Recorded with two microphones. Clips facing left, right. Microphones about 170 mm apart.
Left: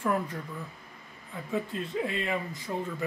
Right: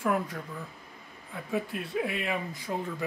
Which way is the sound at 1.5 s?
10° right (ahead or behind).